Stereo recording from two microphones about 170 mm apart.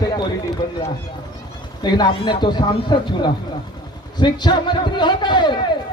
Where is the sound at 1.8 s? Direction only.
25° left (ahead or behind).